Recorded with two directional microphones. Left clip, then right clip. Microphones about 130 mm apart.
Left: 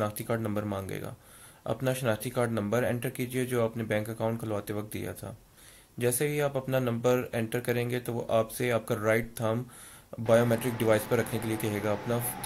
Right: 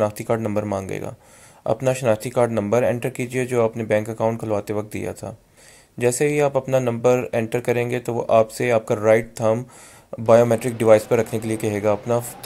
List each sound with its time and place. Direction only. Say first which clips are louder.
0.0 s speech: right 10 dB; 35° right (ahead or behind)